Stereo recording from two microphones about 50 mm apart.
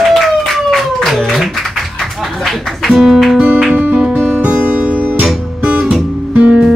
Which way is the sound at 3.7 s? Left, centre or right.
Right.